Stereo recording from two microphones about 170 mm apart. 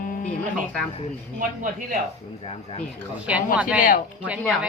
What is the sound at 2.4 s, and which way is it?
Speech, 35° left (ahead or behind).